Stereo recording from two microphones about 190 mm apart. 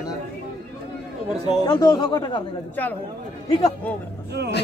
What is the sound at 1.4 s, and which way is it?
Speech, 20° left (ahead or behind).